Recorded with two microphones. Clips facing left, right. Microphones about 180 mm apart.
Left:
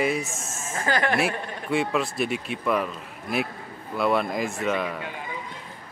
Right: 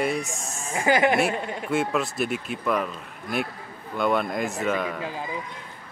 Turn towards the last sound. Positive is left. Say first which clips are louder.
# even
turn(degrees=0)  # may be behind; listen again after turning